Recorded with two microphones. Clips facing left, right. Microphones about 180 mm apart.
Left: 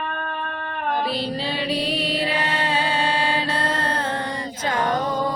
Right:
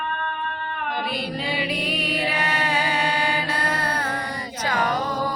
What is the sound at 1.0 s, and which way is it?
Music, 30° left (ahead or behind).